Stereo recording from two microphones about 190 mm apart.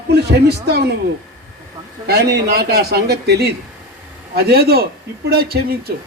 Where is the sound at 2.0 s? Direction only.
60° right (ahead or behind).